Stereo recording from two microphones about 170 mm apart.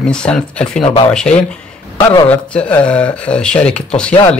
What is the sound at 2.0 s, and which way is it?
Speech, 15° left (ahead or behind).